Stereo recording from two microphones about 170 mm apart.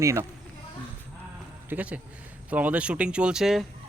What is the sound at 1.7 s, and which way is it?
A man's voice, 10° right (ahead or behind).